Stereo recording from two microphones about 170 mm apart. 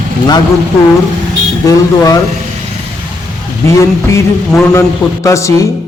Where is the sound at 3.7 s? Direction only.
15° left (ahead or behind).